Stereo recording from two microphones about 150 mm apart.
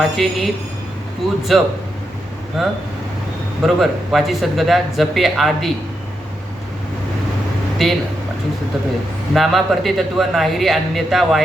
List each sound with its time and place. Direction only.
0.0 s speech: centre (ahead or behind)
7.8 s speech: centre (ahead or behind)
9.3 s speech: centre (ahead or behind)